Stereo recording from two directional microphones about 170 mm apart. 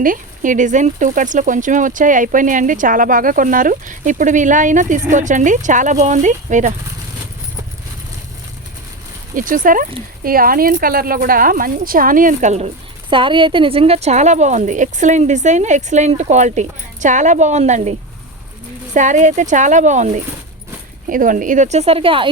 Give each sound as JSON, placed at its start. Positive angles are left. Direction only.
{"t": 0.0, "sound": "a woman's voice", "side_deg": -50}
{"t": 9.3, "sound": "a woman's voice", "side_deg": -50}
{"t": 18.9, "sound": "a woman's voice", "side_deg": -45}